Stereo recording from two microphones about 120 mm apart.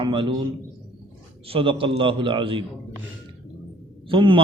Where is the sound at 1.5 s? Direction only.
50° right (ahead or behind).